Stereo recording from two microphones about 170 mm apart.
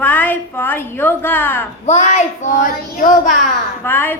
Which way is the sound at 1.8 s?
40° left (ahead or behind).